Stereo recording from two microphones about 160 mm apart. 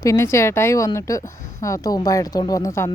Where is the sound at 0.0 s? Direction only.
20° left (ahead or behind).